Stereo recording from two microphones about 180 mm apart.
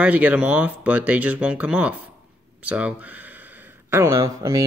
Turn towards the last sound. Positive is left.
turn(degrees=-15)  # may be behind; listen again after turning